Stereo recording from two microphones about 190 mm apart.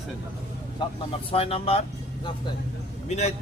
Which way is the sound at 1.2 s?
30° left (ahead or behind).